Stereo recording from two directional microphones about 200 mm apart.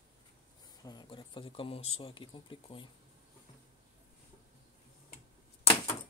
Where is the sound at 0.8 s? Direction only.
25° left (ahead or behind).